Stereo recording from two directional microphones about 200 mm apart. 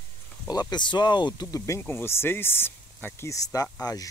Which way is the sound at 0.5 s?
20° left (ahead or behind).